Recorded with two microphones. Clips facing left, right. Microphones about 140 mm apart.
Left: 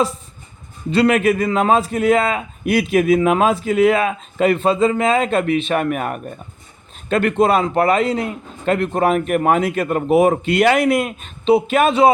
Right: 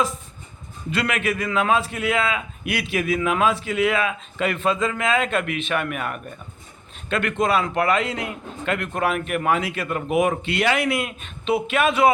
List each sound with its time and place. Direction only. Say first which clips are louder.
0.9 s a man's voice: left 9 dB; 35° left (ahead or behind)